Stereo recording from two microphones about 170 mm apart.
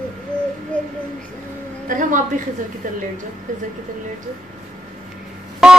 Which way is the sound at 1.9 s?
50° right (ahead or behind).